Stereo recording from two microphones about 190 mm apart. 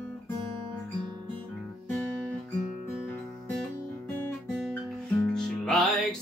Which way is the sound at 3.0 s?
10° left (ahead or behind).